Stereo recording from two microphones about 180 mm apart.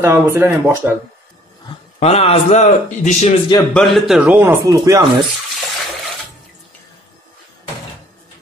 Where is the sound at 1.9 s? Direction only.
35° left (ahead or behind).